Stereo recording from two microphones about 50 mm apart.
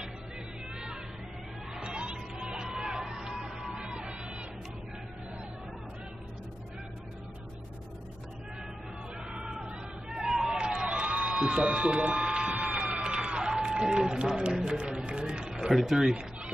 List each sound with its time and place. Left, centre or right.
1.7 s music: centre
9.3 s hubbub: centre
10.6 s a sound: right
13.9 s a man's voice: right
15.7 s speech: centre